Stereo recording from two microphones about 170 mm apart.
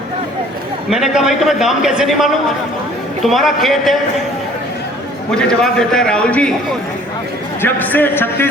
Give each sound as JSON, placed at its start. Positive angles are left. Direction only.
{"t": 0.9, "sound": "a man's voice", "side_deg": 0}
{"t": 5.3, "sound": "a man's voice", "side_deg": 5}
{"t": 7.6, "sound": "a man's voice", "side_deg": 10}